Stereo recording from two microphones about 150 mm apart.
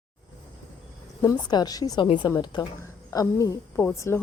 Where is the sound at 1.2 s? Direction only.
25° left (ahead or behind).